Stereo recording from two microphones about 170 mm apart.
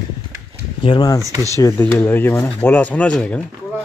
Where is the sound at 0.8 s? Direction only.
25° left (ahead or behind).